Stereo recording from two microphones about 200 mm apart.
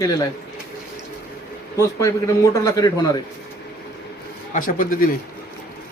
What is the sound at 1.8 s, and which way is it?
A man's voice, 15° left (ahead or behind).